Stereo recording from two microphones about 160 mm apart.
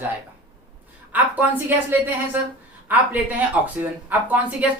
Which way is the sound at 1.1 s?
10° right (ahead or behind).